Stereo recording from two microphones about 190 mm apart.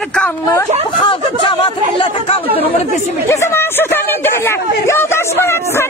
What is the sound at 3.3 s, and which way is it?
Speech, 15° left (ahead or behind).